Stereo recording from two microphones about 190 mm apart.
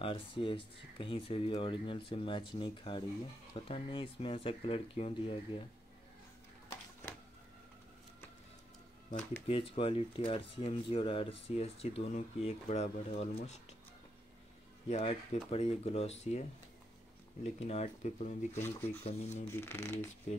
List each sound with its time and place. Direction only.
0.0 s speech: 25° left (ahead or behind)
9.5 s speech: 30° left (ahead or behind)
14.9 s speech: 35° left (ahead or behind)
17.4 s speech: 35° left (ahead or behind)
18.6 s speech: 10° left (ahead or behind)
19.0 s speech: 35° left (ahead or behind)
19.5 s speech: 10° left (ahead or behind)